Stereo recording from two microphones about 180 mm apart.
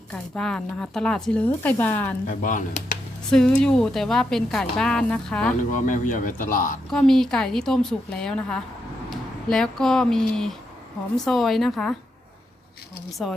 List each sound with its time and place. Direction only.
0.1 s speech: 5° left (ahead or behind)
2.2 s speech: 45° left (ahead or behind)
3.3 s speech: 5° left (ahead or behind)
5.7 s speech: 45° left (ahead or behind)
6.9 s speech: 5° left (ahead or behind)